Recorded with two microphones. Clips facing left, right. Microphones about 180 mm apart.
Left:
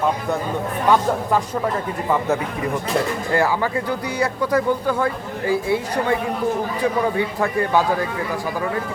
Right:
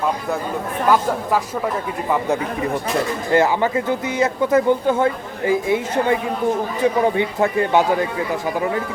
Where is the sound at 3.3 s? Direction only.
20° right (ahead or behind).